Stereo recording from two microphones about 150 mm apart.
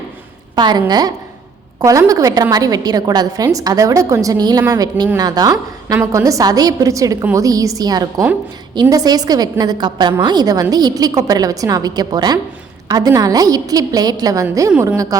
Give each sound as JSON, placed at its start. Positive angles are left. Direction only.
{"t": 0.5, "sound": "a woman's voice", "side_deg": -30}
{"t": 14.7, "sound": "a woman's voice", "side_deg": -10}